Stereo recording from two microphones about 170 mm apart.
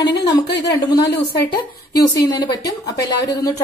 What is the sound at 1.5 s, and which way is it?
Speech, 25° left (ahead or behind).